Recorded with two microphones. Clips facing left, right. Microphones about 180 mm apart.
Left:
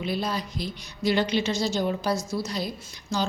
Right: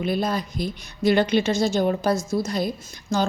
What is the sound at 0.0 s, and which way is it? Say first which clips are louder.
A woman's voice: right 5 dB; 50° right (ahead or behind).